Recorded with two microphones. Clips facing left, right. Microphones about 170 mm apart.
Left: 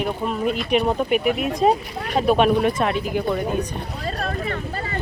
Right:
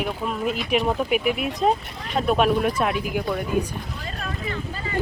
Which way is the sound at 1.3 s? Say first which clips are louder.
Left 2 dB; 45° left (ahead or behind).